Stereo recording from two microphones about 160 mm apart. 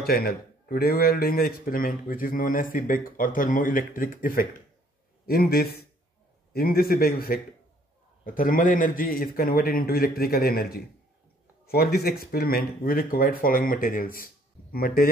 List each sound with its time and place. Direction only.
0.0 s a man's voice: 70° left (ahead or behind)